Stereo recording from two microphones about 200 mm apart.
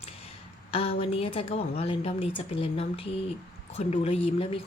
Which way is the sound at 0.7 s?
30° left (ahead or behind).